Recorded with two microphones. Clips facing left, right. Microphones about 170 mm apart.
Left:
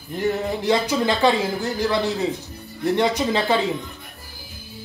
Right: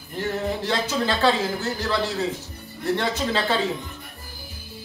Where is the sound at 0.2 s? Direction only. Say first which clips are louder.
Left 3 dB; 15° left (ahead or behind).